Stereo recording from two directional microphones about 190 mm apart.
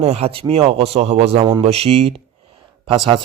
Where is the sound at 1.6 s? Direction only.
30° right (ahead or behind).